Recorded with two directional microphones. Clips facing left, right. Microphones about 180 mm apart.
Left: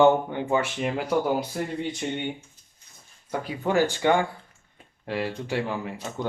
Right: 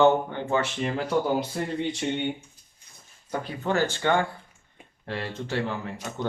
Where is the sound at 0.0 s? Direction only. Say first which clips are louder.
Left 1 dB; 15° left (ahead or behind).